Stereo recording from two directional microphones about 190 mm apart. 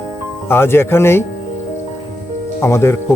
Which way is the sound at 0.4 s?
10° left (ahead or behind).